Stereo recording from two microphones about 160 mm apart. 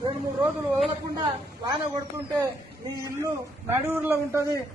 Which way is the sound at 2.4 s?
20° right (ahead or behind).